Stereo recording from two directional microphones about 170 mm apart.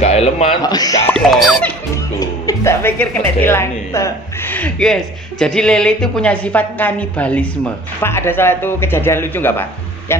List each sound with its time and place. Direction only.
0.0 s speech: 40° left (ahead or behind)
0.6 s speech: 20° left (ahead or behind)
1.0 s speech: 5° left (ahead or behind)
2.1 s a woman's voice: 20° left (ahead or behind)